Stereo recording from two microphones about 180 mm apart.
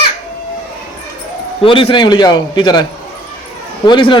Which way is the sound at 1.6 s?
30° left (ahead or behind).